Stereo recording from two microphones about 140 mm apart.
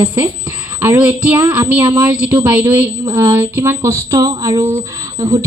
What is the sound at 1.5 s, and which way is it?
A woman's voice, 10° right (ahead or behind).